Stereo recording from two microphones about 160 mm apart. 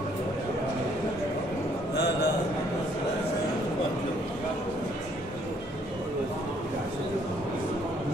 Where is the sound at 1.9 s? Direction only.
90° left.